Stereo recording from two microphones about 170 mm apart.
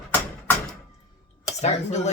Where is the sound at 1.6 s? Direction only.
40° left (ahead or behind).